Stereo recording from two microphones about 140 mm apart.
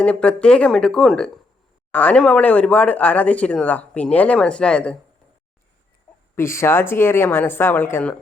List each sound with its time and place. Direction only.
0.0 s speech: 10° left (ahead or behind)
6.3 s speech: 20° left (ahead or behind)